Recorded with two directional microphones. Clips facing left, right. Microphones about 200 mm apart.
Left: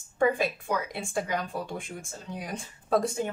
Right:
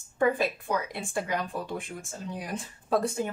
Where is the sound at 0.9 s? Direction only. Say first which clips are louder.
Even; centre (ahead or behind).